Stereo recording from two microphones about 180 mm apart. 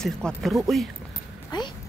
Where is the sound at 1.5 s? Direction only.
25° left (ahead or behind).